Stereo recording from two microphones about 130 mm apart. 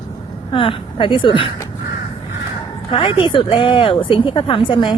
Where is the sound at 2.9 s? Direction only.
40° left (ahead or behind).